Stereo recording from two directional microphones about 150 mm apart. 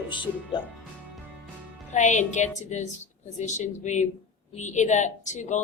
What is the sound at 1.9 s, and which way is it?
A woman's voice, 55° left (ahead or behind).